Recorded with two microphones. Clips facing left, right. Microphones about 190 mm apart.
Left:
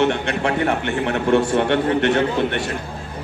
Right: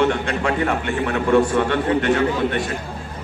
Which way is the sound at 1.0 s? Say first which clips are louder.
Right 1 dB; 25° left (ahead or behind).